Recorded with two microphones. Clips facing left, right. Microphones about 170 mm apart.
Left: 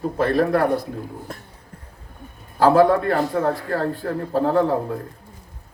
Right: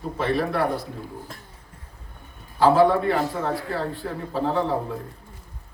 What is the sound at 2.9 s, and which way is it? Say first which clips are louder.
A man's voice: left 3 dB; 50° left (ahead or behind).